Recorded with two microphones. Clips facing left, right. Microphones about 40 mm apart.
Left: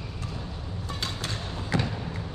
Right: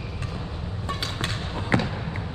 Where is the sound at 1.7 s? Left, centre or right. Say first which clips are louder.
Right 5 dB; right.